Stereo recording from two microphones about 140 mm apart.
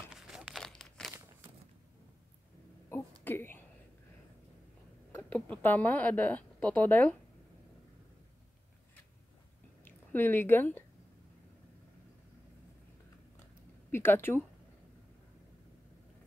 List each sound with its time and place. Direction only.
0.1 s crumpling: 5° right (ahead or behind)
2.9 s a sound: 15° left (ahead or behind)
5.1 s speech: 10° left (ahead or behind)
9.8 s speech: 15° left (ahead or behind)
13.9 s speech: 15° left (ahead or behind)